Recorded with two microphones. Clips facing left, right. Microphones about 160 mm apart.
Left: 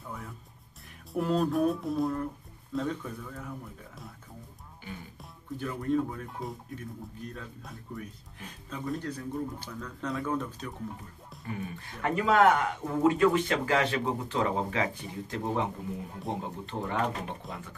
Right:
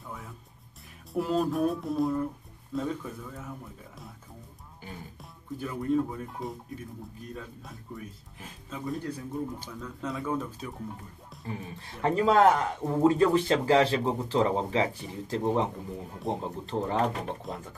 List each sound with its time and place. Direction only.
0.0 s music: centre (ahead or behind)
1.1 s speech: centre (ahead or behind)
5.2 s speech: 5° right (ahead or behind)
11.4 s speech: 30° right (ahead or behind)
16.1 s speech: centre (ahead or behind)
16.7 s speech: 30° right (ahead or behind)
17.5 s speech: centre (ahead or behind)